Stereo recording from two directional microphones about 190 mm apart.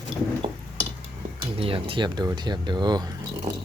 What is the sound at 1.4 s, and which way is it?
Speech, 30° right (ahead or behind).